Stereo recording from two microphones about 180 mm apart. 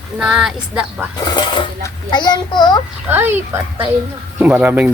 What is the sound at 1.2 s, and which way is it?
A child's voice, 25° left (ahead or behind).